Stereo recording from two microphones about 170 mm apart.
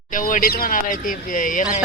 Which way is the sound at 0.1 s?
50° left (ahead or behind).